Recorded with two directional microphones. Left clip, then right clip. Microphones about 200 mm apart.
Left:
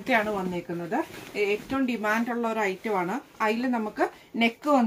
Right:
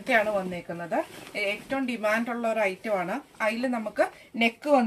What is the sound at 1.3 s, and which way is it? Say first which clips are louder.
Speech: left 2 dB; 10° right (ahead or behind).